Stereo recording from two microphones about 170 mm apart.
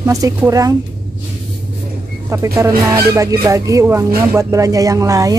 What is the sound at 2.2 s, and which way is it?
Speech, 15° right (ahead or behind).